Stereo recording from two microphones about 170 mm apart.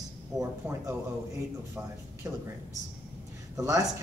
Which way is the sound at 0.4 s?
15° right (ahead or behind).